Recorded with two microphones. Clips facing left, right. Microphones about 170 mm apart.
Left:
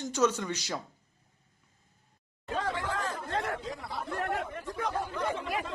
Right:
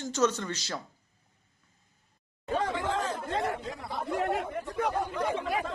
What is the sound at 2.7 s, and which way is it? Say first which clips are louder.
Chatter: right 3 dB; 20° right (ahead or behind).